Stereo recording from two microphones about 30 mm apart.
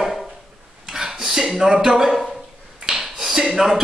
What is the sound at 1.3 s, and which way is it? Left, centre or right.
Speech, centre.